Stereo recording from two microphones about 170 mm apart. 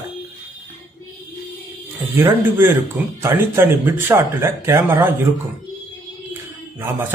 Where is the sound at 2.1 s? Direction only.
15° right (ahead or behind).